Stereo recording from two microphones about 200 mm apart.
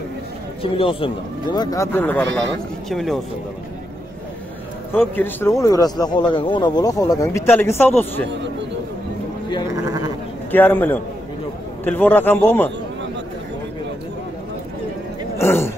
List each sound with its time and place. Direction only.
0.6 s speech: 25° left (ahead or behind); by 3.2 s centre (ahead or behind)
5.1 s speech: 10° left (ahead or behind)
10.5 s speech: 10° left (ahead or behind)
15.3 s a sound: 10° left (ahead or behind)